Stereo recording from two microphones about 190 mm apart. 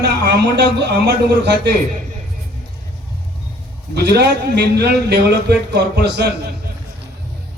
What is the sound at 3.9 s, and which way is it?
A man's voice, 60° right (ahead or behind).